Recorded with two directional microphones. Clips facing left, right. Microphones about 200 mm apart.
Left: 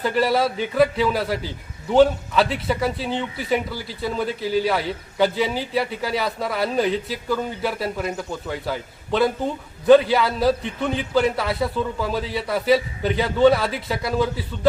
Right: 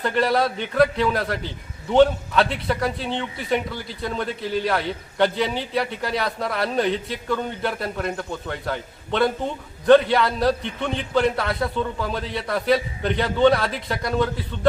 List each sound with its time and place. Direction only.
0.0 s a man's voice: 5° left (ahead or behind)